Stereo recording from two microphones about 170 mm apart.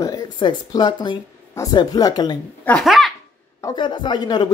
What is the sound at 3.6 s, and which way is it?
Speech, 25° left (ahead or behind).